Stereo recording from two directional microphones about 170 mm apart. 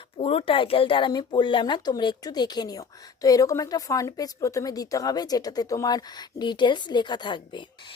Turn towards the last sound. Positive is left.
turn(degrees=30)  # may be behind; listen again after turning